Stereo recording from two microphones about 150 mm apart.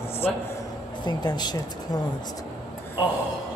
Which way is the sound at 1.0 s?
30° left (ahead or behind).